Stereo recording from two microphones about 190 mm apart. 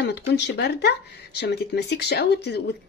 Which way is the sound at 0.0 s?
60° left (ahead or behind).